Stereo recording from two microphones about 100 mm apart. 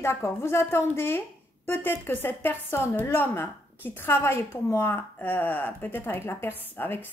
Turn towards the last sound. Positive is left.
turn(degrees=20)  # may be behind; listen again after turning